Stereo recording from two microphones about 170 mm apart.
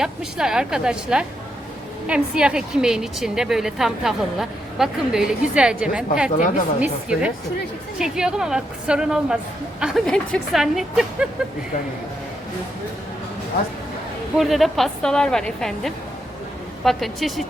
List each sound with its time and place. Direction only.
0.0 s a woman's voice: 5° right (ahead or behind)
6.3 s a woman's voice: 50° left (ahead or behind)
6.7 s a woman's voice: 5° right (ahead or behind)
14.3 s a woman's voice: centre (ahead or behind)